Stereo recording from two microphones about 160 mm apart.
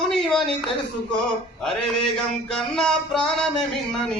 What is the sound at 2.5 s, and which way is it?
Music, 5° left (ahead or behind).